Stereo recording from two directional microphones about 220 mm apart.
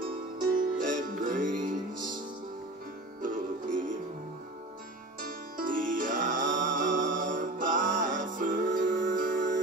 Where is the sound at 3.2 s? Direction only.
35° right (ahead or behind).